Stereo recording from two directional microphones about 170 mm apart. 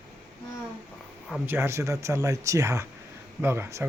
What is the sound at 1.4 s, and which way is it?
Speech, 15° right (ahead or behind).